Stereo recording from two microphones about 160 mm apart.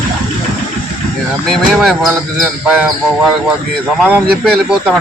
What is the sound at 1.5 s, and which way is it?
Speech, centre (ahead or behind).